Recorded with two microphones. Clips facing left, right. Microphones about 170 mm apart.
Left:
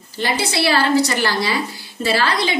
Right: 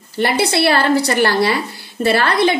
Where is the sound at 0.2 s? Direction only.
60° right (ahead or behind).